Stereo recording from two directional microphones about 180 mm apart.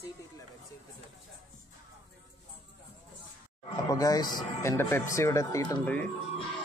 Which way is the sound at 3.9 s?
20° left (ahead or behind).